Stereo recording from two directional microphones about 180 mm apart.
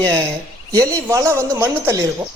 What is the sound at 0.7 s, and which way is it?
Speech, 20° right (ahead or behind).